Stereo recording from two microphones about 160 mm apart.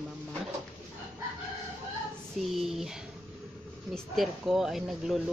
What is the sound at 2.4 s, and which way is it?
Speech, centre (ahead or behind).